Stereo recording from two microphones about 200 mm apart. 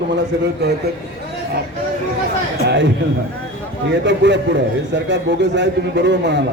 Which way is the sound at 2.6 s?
60° right (ahead or behind).